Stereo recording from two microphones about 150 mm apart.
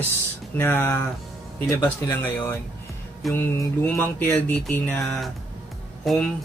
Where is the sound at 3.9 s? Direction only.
10° left (ahead or behind).